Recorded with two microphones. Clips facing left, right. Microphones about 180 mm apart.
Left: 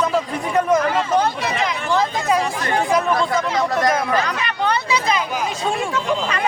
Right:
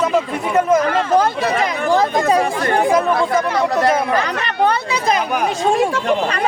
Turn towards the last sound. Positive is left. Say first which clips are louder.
# right 6 dB
turn(degrees=-55)  # may be behind; listen again after turning